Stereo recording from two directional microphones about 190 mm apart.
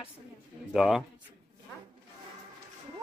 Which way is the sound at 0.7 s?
Centre (ahead or behind).